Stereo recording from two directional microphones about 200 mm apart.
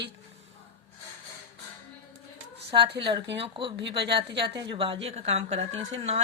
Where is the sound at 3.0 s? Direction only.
25° right (ahead or behind).